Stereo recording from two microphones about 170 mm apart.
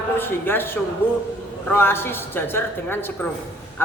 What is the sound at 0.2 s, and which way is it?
A man's voice, 10° left (ahead or behind).